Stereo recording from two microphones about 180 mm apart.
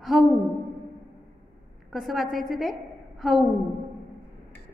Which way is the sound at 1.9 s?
Centre (ahead or behind).